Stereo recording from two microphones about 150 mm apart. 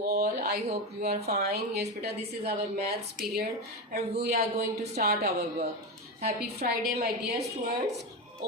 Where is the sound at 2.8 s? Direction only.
85° right.